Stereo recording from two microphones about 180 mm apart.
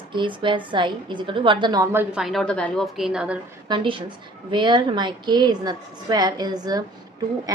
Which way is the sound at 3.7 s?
30° right (ahead or behind).